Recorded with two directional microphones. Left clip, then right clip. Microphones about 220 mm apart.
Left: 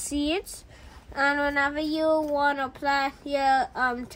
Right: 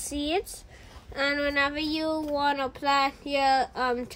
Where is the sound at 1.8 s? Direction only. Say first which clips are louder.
Left 5 dB; centre (ahead or behind).